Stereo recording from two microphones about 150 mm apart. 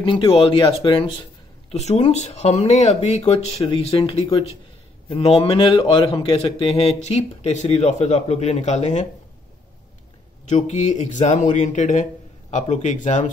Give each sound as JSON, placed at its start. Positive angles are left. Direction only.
{"t": 0.0, "sound": "speech", "side_deg": 35}
{"t": 1.7, "sound": "a man's voice", "side_deg": 45}
{"t": 10.4, "sound": "a man's voice", "side_deg": 50}